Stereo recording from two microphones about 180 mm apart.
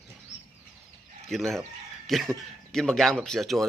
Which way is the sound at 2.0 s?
Centre (ahead or behind).